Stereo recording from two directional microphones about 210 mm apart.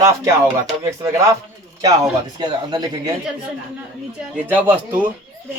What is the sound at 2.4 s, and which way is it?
Speech, 20° right (ahead or behind).